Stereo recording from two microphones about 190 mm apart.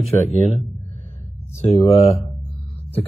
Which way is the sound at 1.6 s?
35° left (ahead or behind).